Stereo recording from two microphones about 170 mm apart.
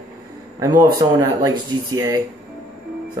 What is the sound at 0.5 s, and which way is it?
Speech, 20° right (ahead or behind).